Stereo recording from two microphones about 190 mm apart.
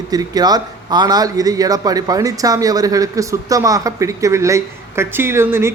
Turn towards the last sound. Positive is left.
turn(degrees=-15)  # may be behind; listen again after turning